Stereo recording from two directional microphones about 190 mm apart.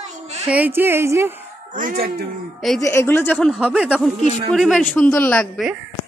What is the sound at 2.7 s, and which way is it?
A man's voice, 15° left (ahead or behind).